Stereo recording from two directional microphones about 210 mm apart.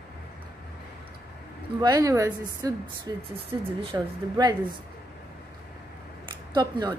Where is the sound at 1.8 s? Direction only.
15° right (ahead or behind).